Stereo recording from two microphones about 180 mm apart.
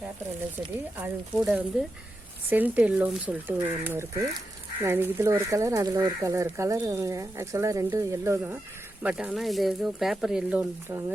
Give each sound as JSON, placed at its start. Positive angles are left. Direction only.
{"t": 0.9, "sound": "speech", "side_deg": -5}